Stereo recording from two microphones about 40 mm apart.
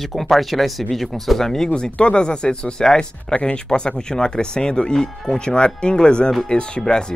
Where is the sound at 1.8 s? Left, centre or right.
Left.